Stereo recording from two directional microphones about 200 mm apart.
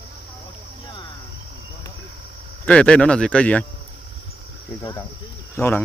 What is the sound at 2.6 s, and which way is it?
Speech, 5° left (ahead or behind).